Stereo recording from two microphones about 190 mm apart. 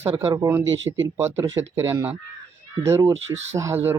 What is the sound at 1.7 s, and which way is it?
Speech, 15° right (ahead or behind).